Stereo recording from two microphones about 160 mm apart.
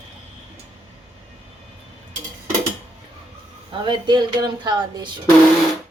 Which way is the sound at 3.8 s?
30° right (ahead or behind).